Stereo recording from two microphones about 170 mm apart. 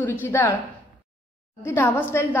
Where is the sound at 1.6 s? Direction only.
15° left (ahead or behind).